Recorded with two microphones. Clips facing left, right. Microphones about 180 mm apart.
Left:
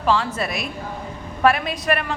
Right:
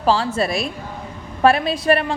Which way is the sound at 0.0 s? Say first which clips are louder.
Right 3 dB; 30° right (ahead or behind).